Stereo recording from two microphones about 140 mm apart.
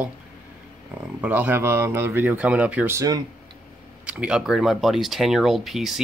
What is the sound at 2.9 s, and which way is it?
Speech, 25° right (ahead or behind).